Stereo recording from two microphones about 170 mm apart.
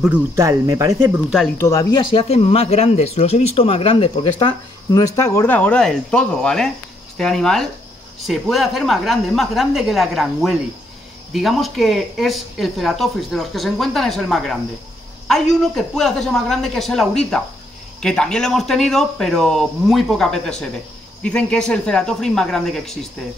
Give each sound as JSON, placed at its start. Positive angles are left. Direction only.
{"t": 0.4, "sound": "speech", "side_deg": -20}
{"t": 1.6, "sound": "speech", "side_deg": 20}
{"t": 15.6, "sound": "speech", "side_deg": 0}